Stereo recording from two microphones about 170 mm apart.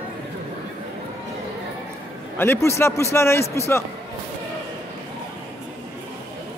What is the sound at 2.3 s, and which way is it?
A man's voice, 15° left (ahead or behind).